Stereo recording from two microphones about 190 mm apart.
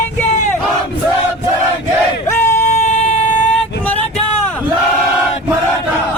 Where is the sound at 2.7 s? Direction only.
35° left (ahead or behind).